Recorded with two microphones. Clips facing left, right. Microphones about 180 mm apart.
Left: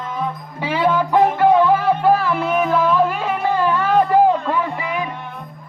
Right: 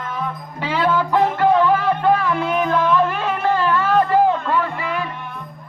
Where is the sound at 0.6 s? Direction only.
10° left (ahead or behind).